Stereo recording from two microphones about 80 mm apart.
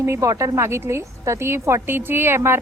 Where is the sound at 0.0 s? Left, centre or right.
Right.